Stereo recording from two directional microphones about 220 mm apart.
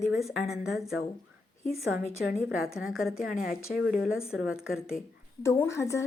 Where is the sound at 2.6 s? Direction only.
70° left (ahead or behind).